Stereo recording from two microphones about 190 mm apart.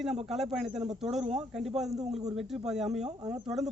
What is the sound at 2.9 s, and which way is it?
Speech, 35° right (ahead or behind).